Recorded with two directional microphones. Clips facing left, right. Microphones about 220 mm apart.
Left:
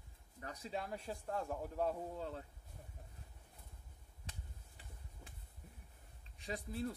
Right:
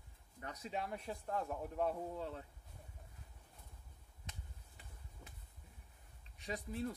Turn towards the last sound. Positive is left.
turn(degrees=30)  # may be behind; listen again after turning